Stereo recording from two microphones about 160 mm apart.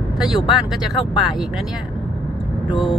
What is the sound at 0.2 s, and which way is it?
Speech, centre (ahead or behind).